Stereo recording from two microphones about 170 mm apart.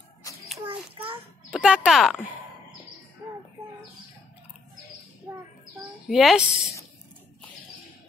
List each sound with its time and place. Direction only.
0.7 s a sound: 30° right (ahead or behind)
1.5 s speech: 5° right (ahead or behind)
6.0 s a woman's voice: centre (ahead or behind)